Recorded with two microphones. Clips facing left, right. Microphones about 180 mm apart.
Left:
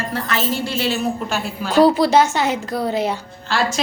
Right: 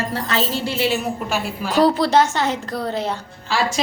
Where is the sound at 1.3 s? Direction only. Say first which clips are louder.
Even; centre (ahead or behind).